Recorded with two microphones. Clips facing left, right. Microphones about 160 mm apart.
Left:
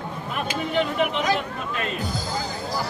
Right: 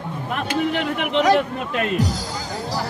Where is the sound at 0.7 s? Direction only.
70° right (ahead or behind).